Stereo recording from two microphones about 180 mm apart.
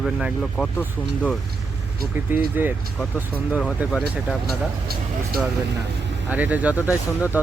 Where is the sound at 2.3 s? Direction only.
10° right (ahead or behind).